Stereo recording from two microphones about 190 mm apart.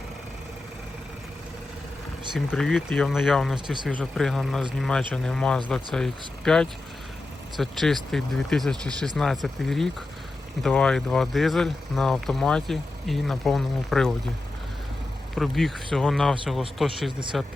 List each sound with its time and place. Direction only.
2.5 s speech: 5° left (ahead or behind)
15.4 s speech: centre (ahead or behind)